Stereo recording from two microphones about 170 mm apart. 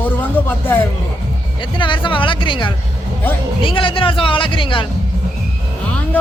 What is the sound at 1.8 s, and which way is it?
Speech, 30° left (ahead or behind).